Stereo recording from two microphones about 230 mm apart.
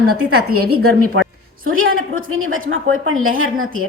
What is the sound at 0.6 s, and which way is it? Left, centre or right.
Speech, right.